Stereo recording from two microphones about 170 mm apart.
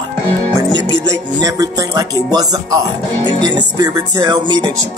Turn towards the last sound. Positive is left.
turn(degrees=-25)  # may be behind; listen again after turning